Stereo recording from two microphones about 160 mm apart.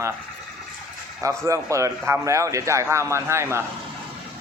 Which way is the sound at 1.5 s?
20° right (ahead or behind).